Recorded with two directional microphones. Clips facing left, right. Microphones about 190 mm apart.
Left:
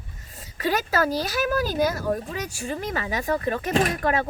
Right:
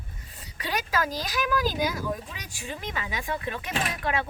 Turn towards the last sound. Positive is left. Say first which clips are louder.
# left 7 dB
turn(degrees=45)  # may be behind; listen again after turning